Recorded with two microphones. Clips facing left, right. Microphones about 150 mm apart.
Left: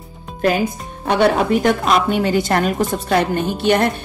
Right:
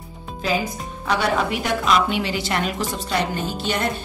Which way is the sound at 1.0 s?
50° left (ahead or behind).